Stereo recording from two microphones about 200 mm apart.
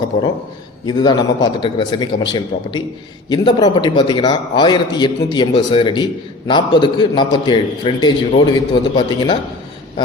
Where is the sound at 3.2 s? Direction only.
20° left (ahead or behind).